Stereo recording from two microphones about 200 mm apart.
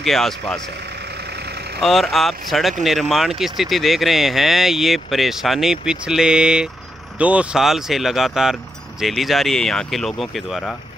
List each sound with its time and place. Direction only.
0.0 s speech: centre (ahead or behind)
1.3 s vehicle: 55° right (ahead or behind)
1.8 s speech: centre (ahead or behind)